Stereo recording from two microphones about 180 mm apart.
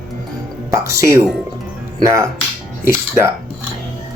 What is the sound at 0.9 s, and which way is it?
Speech, 15° right (ahead or behind).